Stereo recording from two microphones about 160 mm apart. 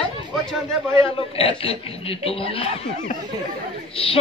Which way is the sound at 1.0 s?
35° left (ahead or behind).